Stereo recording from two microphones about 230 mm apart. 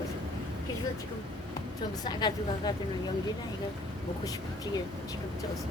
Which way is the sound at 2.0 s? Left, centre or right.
Centre.